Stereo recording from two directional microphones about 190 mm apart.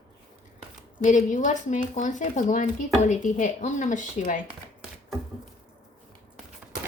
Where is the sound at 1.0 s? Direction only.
40° left (ahead or behind).